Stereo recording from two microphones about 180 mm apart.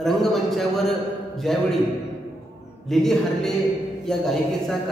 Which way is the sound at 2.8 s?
Centre (ahead or behind).